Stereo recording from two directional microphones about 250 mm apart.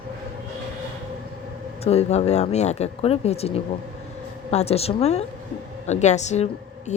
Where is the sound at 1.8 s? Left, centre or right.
Left.